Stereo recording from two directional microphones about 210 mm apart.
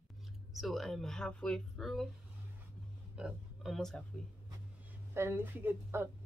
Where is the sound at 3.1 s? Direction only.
5° right (ahead or behind).